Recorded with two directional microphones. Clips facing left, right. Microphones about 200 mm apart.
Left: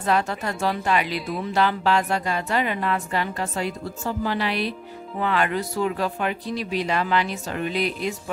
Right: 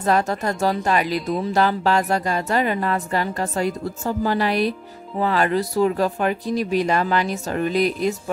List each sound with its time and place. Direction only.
0.0 s speech: 40° right (ahead or behind)